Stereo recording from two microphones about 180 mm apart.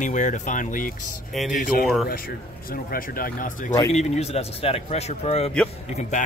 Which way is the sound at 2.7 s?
55° left (ahead or behind).